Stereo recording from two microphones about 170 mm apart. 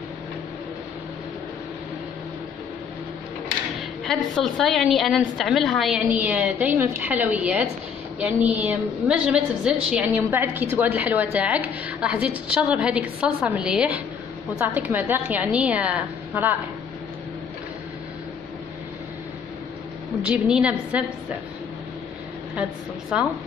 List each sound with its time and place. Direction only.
4.0 s a woman's voice: centre (ahead or behind)
20.2 s a woman's voice: 5° right (ahead or behind)
22.6 s a woman's voice: 5° right (ahead or behind)